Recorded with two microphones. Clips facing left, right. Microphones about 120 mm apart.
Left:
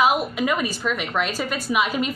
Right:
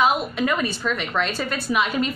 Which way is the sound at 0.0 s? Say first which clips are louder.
Even; 5° left (ahead or behind).